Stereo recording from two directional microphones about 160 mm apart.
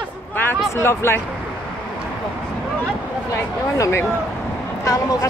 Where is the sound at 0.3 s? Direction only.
10° left (ahead or behind).